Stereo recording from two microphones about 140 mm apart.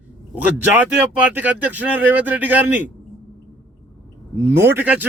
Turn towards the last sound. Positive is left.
turn(degrees=-15)  # may be behind; listen again after turning